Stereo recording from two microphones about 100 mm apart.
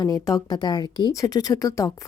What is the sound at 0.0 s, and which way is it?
A woman's voice, 40° left (ahead or behind).